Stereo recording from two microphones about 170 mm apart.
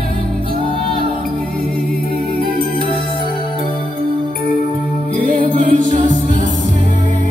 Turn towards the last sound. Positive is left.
turn(degrees=-50)  # may be behind; listen again after turning